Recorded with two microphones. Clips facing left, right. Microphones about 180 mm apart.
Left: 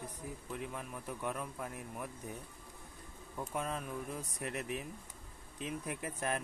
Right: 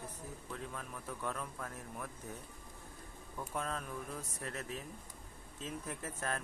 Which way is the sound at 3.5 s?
15° left (ahead or behind).